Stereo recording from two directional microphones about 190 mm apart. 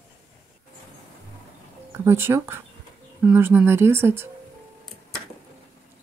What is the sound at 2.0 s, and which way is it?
Speech, 15° right (ahead or behind).